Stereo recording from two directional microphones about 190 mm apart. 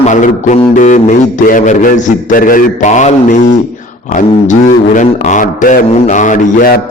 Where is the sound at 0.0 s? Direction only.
40° left (ahead or behind).